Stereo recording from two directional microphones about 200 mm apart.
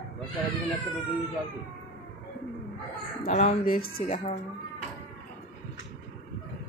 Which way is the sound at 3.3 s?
35° left (ahead or behind).